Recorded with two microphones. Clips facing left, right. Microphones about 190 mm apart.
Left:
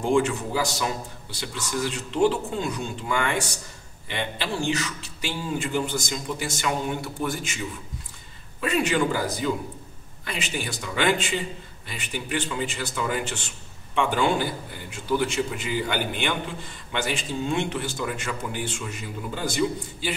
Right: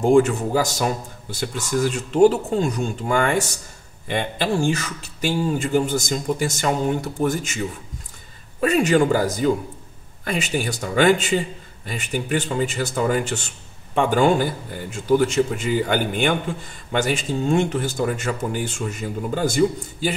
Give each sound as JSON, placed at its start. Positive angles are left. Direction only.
{"t": 0.0, "sound": "a man's voice", "side_deg": -45}